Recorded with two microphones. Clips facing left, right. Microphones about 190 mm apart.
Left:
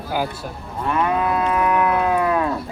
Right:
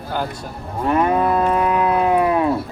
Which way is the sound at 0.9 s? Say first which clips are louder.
Right 3 dB; 35° right (ahead or behind).